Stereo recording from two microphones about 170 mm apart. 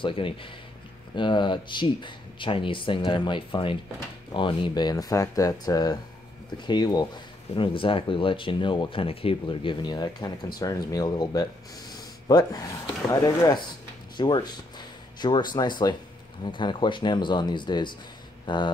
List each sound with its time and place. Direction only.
0.0 s speech: 30° left (ahead or behind)